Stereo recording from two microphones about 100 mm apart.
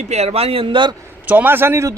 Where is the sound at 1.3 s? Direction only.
20° right (ahead or behind).